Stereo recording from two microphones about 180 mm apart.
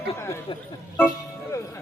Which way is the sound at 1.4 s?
15° left (ahead or behind).